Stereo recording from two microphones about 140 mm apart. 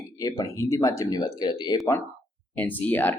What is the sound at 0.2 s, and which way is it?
Speech, 25° left (ahead or behind).